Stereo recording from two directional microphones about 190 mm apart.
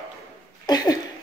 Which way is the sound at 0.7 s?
20° left (ahead or behind).